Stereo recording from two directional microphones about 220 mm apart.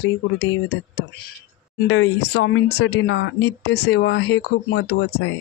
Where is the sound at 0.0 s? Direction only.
60° left (ahead or behind).